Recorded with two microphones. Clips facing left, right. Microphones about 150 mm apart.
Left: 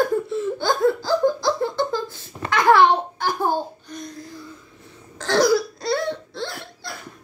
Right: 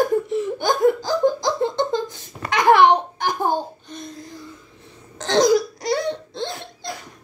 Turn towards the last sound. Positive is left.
turn(degrees=-20)  # may be behind; listen again after turning